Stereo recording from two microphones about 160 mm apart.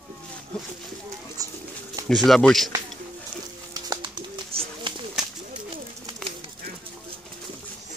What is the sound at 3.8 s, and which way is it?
Bird, 25° right (ahead or behind).